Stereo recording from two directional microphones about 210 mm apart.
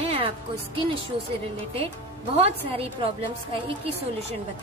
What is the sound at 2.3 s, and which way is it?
Speech, 30° right (ahead or behind).